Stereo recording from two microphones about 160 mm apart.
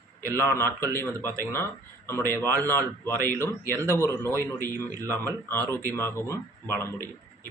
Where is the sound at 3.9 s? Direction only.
15° left (ahead or behind).